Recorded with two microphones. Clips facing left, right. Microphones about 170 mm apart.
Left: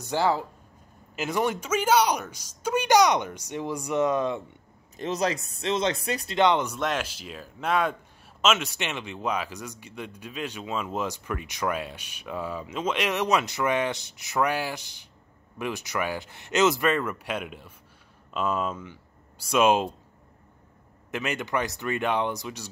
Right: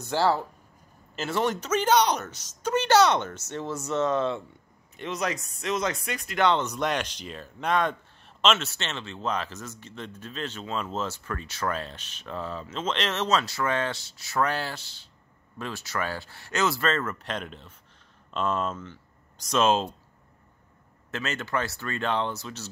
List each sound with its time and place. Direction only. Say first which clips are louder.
0.0 s a man's voice: even; 15° left (ahead or behind)
4.9 s speech: left 3 dB; 35° left (ahead or behind); by 6.7 s 15° left (ahead or behind)
6.7 s a man's voice: even; 5° left (ahead or behind)
21.1 s a man's voice: left 2 dB; 15° left (ahead or behind)